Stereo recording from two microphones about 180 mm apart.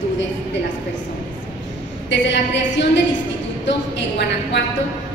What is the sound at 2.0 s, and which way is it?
Speech, 75° left (ahead or behind).